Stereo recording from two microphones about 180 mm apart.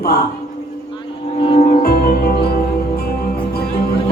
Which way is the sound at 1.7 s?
55° left (ahead or behind).